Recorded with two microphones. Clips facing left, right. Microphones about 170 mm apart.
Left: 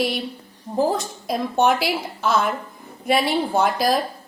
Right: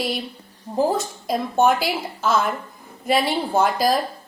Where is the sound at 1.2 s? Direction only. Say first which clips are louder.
Right 1 dB; centre (ahead or behind).